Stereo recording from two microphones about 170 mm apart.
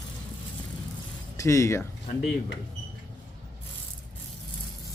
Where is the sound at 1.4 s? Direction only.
20° left (ahead or behind).